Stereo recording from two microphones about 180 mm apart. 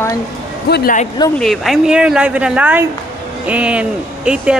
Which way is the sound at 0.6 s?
60° left (ahead or behind).